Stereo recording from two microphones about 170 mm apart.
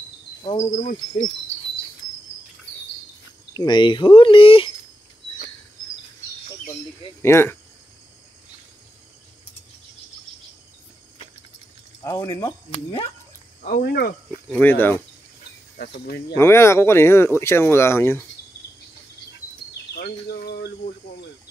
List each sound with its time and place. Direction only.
0.7 s cricket: 45° left (ahead or behind)
3.5 s speech: 25° left (ahead or behind)
7.2 s speech: 15° left (ahead or behind)
12.0 s speech: 15° left (ahead or behind)
13.6 s speech: 55° left (ahead or behind)
14.5 s speech: 10° left (ahead or behind)
15.8 s speech: 70° left (ahead or behind)
16.3 s speech: 15° left (ahead or behind)
19.9 s a sound: 70° left (ahead or behind)